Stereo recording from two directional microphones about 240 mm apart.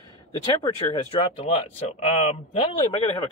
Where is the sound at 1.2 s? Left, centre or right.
Left.